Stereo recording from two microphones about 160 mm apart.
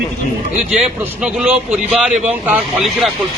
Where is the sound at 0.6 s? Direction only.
5° right (ahead or behind).